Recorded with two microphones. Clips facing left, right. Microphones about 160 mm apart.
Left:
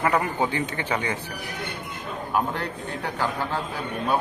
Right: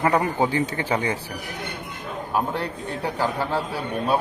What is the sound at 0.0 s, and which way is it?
Speech, 25° right (ahead or behind).